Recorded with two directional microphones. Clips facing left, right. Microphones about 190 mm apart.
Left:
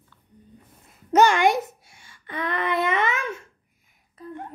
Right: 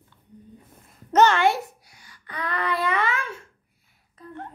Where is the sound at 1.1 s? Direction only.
10° left (ahead or behind).